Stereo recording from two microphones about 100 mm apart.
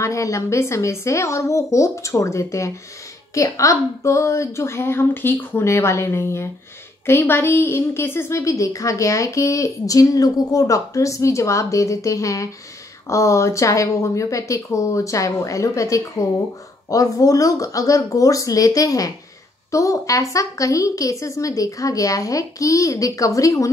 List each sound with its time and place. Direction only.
0.0 s a woman's voice: 30° left (ahead or behind)